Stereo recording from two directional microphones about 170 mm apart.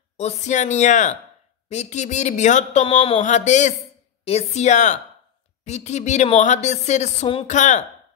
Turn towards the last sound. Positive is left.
turn(degrees=45)  # may be behind; listen again after turning